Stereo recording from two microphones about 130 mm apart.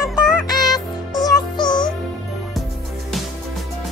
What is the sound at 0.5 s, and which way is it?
Music, 30° left (ahead or behind).